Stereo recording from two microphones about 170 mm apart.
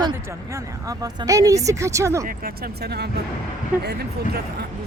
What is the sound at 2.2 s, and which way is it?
Speech, 60° right (ahead or behind).